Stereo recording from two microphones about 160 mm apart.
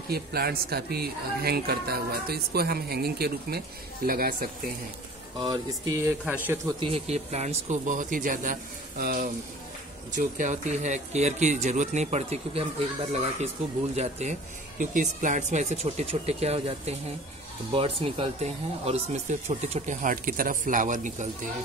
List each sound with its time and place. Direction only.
0.1 s speech: 75° right (ahead or behind)
5.4 s music: 25° right (ahead or behind)
6.2 s a man's voice: 10° right (ahead or behind)
6.8 s speech: 40° right (ahead or behind); by 9.3 s 65° right (ahead or behind)
10.1 s speech: 50° right (ahead or behind)